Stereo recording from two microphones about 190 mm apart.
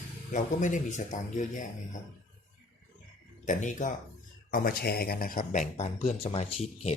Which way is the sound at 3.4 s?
40° left (ahead or behind).